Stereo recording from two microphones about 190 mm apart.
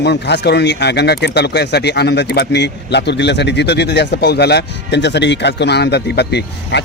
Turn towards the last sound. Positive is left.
turn(degrees=60)  # may be behind; listen again after turning